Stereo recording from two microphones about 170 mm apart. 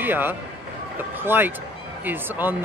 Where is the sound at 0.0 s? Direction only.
10° right (ahead or behind).